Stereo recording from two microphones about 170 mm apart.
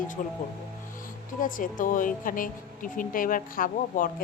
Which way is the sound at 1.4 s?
50° left (ahead or behind).